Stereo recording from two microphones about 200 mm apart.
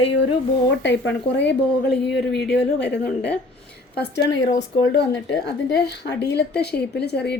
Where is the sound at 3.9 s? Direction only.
55° left (ahead or behind).